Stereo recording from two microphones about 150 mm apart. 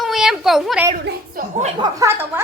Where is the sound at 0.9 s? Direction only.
70° right (ahead or behind).